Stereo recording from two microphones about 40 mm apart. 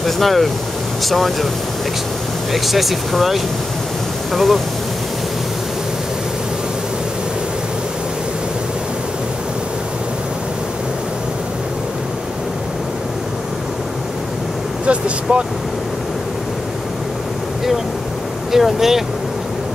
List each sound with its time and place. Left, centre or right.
0.0 s speech: centre
2.5 s speech: centre
14.9 s vehicle: right
18.5 s speech: centre